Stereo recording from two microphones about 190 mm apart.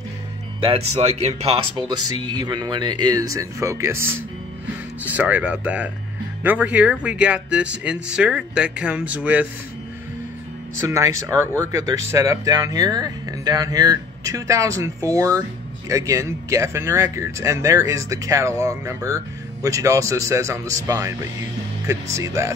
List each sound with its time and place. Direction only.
0.6 s speech: 30° right (ahead or behind); by 9.5 s 10° right (ahead or behind)
10.8 s speech: 15° right (ahead or behind)